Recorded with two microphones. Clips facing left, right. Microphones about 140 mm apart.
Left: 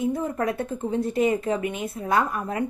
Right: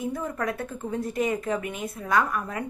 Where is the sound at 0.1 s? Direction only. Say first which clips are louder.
Left 4 dB; 30° left (ahead or behind).